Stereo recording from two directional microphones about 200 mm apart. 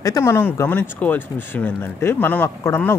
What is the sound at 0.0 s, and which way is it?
Speech, 15° left (ahead or behind).